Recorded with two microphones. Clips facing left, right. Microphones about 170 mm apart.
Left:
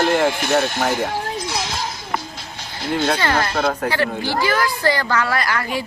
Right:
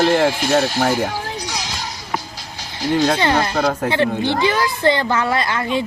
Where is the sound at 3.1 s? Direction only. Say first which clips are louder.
Right 2 dB; 20° right (ahead or behind).